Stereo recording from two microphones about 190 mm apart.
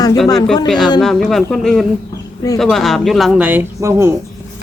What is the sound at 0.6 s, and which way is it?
Speech, centre (ahead or behind).